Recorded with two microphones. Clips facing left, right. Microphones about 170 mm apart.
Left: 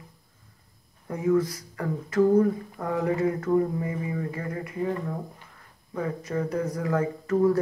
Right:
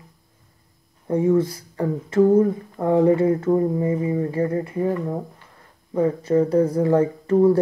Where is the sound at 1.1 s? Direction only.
30° right (ahead or behind).